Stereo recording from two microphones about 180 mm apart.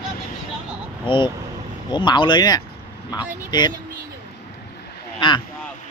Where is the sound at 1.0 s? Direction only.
25° left (ahead or behind).